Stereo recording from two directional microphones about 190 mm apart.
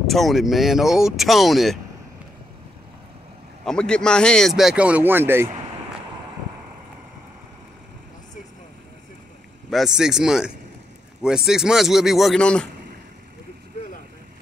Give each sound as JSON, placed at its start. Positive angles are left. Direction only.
{"t": 0.0, "sound": "speech", "side_deg": 0}
{"t": 3.6, "sound": "speech", "side_deg": 5}
{"t": 9.7, "sound": "speech", "side_deg": 0}